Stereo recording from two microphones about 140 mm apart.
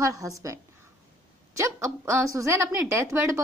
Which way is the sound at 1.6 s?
20° right (ahead or behind).